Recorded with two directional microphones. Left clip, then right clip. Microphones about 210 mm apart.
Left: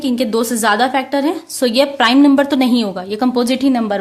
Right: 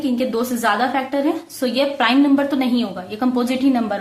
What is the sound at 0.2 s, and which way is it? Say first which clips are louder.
A woman's voice: left 4 dB; 45° left (ahead or behind).